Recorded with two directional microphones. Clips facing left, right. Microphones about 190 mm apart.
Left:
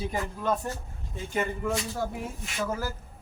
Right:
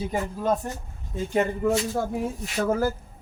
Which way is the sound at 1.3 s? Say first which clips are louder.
Right 6 dB; 40° right (ahead or behind).